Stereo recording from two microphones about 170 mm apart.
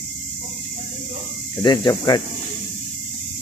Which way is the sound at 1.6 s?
25° left (ahead or behind).